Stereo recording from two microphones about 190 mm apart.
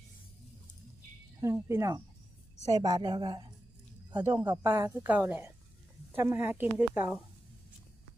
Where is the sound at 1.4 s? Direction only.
15° right (ahead or behind).